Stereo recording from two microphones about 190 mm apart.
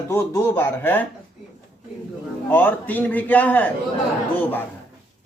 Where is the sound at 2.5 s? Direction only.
10° left (ahead or behind).